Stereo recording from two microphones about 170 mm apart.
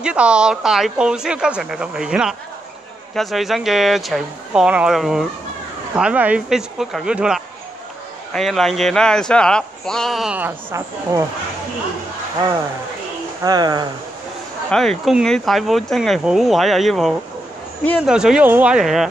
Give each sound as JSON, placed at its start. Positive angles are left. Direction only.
{"t": 0.0, "sound": "speech", "side_deg": -5}
{"t": 13.4, "sound": "speech", "side_deg": -25}
{"t": 14.7, "sound": "speech", "side_deg": 0}